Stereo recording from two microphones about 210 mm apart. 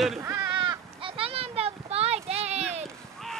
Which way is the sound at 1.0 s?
25° right (ahead or behind).